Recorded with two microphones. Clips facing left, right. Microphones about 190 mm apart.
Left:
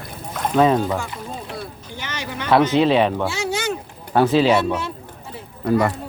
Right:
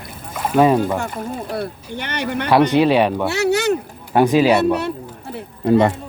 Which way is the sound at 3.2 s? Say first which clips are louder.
Right 7 dB; 65° right (ahead or behind).